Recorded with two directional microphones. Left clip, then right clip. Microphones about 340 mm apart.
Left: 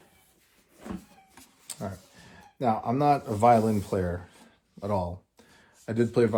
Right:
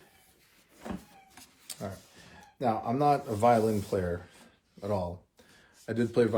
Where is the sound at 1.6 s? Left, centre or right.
Centre.